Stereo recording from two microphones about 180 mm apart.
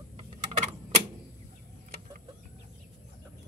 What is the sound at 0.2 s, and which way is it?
Typing, 30° right (ahead or behind).